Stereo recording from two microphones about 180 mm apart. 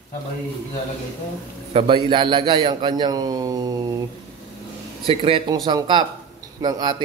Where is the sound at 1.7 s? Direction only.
30° right (ahead or behind).